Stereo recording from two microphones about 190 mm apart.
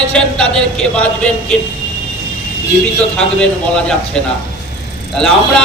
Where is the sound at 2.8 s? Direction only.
5° left (ahead or behind).